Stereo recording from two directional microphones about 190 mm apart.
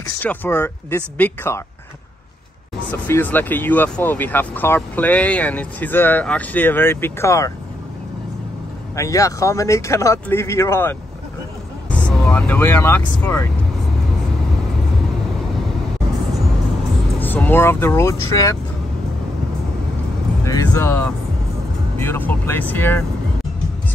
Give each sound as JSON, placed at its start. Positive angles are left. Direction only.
{"t": 0.2, "sound": "speech", "side_deg": 10}
{"t": 2.9, "sound": "speech", "side_deg": 10}
{"t": 8.9, "sound": "speech", "side_deg": 15}
{"t": 17.2, "sound": "speech", "side_deg": 10}
{"t": 20.4, "sound": "speech", "side_deg": 15}